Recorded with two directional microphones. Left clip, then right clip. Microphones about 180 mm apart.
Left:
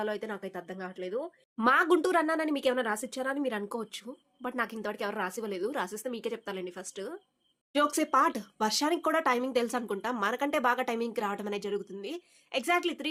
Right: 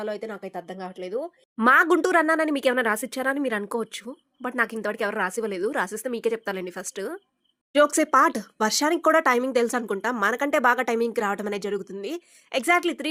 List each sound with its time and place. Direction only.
0.0 s a woman's voice: 20° right (ahead or behind)
1.6 s speech: 45° right (ahead or behind)